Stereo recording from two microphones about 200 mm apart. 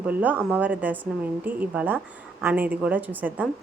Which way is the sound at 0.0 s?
10° right (ahead or behind).